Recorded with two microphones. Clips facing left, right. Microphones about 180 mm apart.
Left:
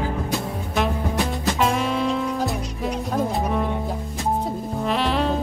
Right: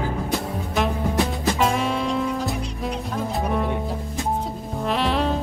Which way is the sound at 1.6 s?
Centre (ahead or behind).